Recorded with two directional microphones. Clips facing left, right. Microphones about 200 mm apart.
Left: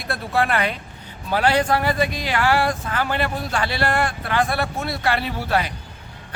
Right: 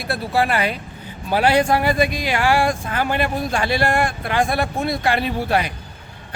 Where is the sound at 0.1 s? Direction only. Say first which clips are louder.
Right 2 dB; 5° right (ahead or behind).